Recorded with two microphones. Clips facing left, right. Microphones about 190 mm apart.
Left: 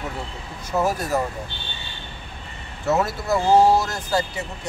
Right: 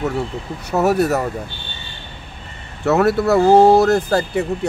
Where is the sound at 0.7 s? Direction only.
70° right (ahead or behind).